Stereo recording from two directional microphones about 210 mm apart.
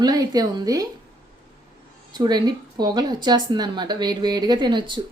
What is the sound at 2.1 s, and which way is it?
A woman's voice, 20° right (ahead or behind).